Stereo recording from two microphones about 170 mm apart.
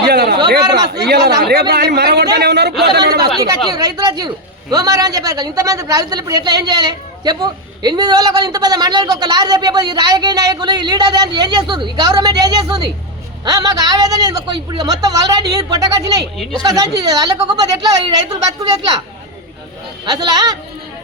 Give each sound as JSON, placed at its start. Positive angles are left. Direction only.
{"t": 0.0, "sound": "a sound", "side_deg": -75}
{"t": 0.6, "sound": "a man's voice", "side_deg": -25}
{"t": 1.0, "sound": "speech", "side_deg": -70}
{"t": 3.7, "sound": "a man's voice", "side_deg": -25}
{"t": 20.1, "sound": "a man's voice", "side_deg": -25}